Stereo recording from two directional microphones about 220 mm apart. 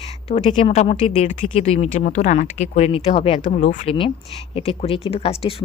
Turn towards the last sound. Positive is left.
turn(degrees=25)  # may be behind; listen again after turning